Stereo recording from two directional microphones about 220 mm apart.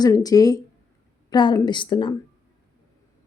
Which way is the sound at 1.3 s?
20° left (ahead or behind).